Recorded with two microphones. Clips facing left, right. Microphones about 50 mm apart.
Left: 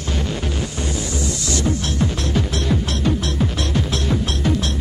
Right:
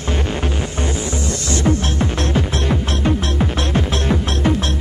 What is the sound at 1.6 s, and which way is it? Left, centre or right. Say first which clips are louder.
Music: right 4 dB; right.